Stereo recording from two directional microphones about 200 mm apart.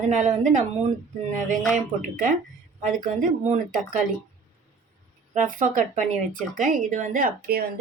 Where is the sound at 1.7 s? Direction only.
40° right (ahead or behind).